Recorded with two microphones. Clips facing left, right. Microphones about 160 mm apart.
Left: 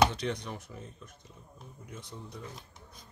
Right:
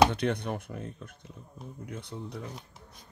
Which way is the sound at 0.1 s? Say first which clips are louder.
Right 5 dB; 55° right (ahead or behind).